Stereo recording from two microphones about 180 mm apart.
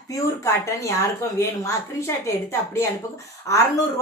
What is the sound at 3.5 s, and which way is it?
Speech, 15° left (ahead or behind).